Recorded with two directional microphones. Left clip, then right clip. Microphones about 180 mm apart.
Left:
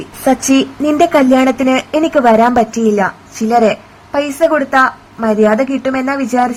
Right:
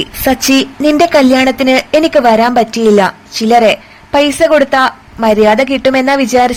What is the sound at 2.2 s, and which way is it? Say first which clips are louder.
A woman's voice: right 1 dB; 10° right (ahead or behind).